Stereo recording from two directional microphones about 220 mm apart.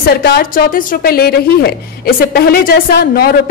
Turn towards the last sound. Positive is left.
turn(degrees=45)  # may be behind; listen again after turning